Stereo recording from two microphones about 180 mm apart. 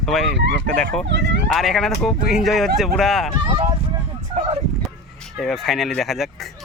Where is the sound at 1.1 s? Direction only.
70° right (ahead or behind).